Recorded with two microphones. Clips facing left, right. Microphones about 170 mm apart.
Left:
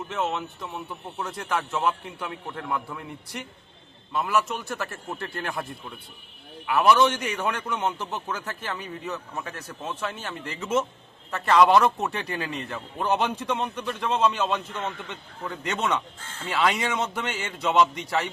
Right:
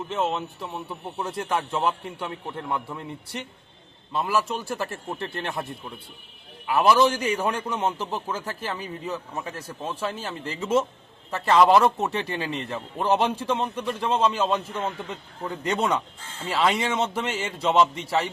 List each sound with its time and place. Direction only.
0.1 s a man's voice: 30° right (ahead or behind)
6.7 s a man's voice: 30° right (ahead or behind)
11.5 s speech: centre (ahead or behind)
11.8 s a man's voice: 25° right (ahead or behind)